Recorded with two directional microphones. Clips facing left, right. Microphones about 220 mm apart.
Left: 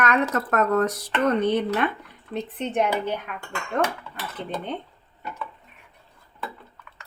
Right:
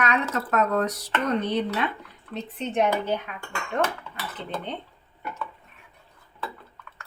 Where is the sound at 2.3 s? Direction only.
55° left (ahead or behind).